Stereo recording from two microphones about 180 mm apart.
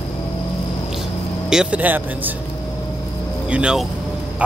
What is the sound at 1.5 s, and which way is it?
Speech, 5° right (ahead or behind).